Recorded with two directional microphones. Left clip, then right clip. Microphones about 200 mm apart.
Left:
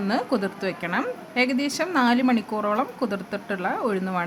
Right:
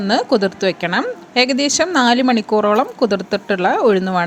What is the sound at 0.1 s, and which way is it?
Speech, 30° right (ahead or behind).